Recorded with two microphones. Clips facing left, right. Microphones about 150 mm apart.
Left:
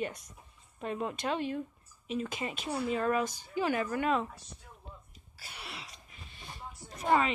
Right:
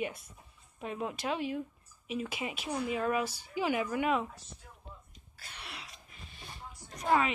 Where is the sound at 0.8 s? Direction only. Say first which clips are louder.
Left 2 dB; 5° right (ahead or behind).